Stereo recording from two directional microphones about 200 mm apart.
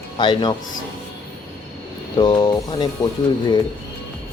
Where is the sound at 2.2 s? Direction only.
20° left (ahead or behind).